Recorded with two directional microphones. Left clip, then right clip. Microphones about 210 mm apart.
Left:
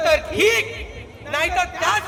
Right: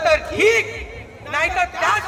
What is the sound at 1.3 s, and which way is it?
Speech, 55° left (ahead or behind).